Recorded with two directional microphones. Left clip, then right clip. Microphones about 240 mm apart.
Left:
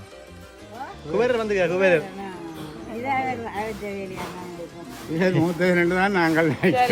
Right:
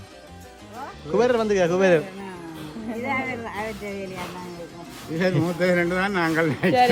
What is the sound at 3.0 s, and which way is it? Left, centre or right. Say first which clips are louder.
Speech: left 3 dB; centre.